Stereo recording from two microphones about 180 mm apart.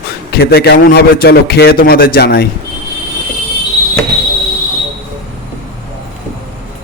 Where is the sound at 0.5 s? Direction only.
60° left (ahead or behind).